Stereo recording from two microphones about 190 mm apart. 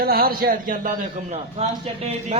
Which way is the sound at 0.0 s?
50° right (ahead or behind).